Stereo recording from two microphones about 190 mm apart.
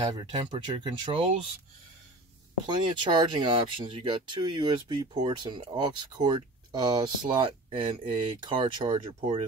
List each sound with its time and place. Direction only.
0.2 s speech: 25° right (ahead or behind)
2.6 s speech: 25° right (ahead or behind)